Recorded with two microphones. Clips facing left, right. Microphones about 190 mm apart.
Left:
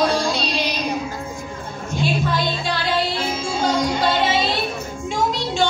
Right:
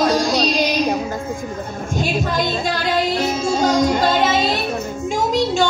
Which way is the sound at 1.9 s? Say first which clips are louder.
Right 1 dB; 45° right (ahead or behind).